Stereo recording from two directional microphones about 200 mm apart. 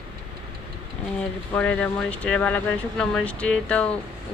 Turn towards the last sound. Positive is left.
turn(degrees=5)  # may be behind; listen again after turning